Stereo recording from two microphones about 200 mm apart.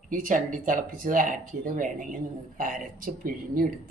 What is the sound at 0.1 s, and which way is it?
Speech, 40° right (ahead or behind).